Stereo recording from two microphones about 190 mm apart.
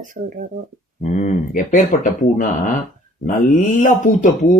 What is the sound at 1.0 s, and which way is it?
Speech, 40° left (ahead or behind).